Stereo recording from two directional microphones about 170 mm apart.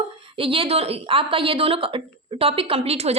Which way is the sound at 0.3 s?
30° right (ahead or behind).